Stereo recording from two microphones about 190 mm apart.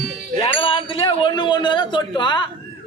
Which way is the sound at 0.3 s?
30° left (ahead or behind).